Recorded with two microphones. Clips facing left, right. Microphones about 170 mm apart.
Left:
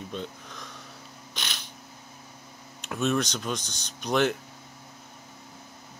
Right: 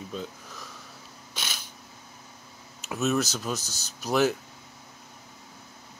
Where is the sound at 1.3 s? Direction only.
5° right (ahead or behind).